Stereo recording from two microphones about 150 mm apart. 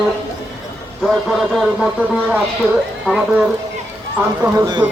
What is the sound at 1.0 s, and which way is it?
A man's voice, centre (ahead or behind).